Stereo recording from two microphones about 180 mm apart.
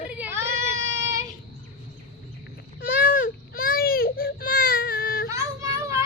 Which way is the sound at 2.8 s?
55° left (ahead or behind).